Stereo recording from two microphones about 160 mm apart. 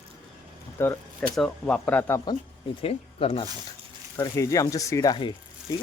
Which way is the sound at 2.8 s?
35° left (ahead or behind).